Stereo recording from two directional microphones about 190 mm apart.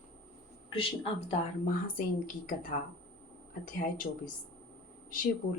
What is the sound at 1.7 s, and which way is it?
Speech, 45° left (ahead or behind).